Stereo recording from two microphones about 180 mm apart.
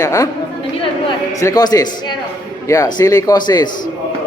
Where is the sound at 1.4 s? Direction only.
20° left (ahead or behind).